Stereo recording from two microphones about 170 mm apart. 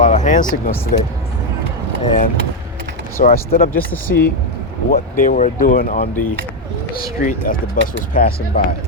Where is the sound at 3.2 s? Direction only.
55° left (ahead or behind).